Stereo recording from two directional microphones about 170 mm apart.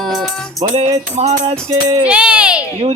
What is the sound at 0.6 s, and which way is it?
Music, 40° right (ahead or behind).